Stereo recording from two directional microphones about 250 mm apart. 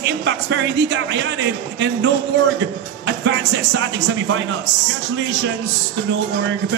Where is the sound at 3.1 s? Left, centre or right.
Right.